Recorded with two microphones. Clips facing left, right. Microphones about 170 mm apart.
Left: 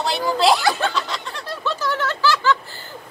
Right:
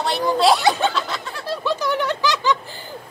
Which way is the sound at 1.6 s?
15° right (ahead or behind).